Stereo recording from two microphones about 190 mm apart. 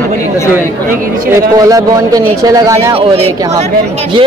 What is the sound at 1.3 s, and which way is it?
A man's voice, 20° right (ahead or behind).